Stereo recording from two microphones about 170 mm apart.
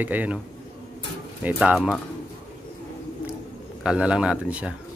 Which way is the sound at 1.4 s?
5° right (ahead or behind).